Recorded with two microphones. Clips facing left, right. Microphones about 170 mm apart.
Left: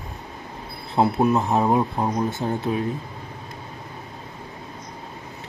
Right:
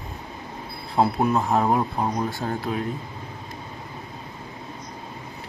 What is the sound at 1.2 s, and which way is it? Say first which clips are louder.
Speech: left 1 dB; 20° left (ahead or behind).